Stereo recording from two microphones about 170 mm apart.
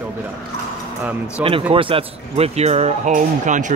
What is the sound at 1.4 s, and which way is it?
Speech, 10° right (ahead or behind).